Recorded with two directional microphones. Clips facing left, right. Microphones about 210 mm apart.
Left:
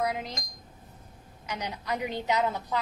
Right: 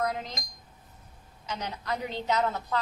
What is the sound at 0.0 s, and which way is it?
Speech, 10° left (ahead or behind).